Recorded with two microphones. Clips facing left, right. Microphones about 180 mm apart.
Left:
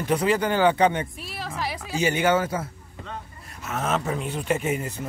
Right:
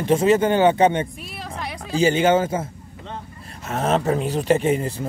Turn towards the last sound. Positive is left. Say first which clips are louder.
# right 6 dB
turn(degrees=-30)  # may be behind; listen again after turning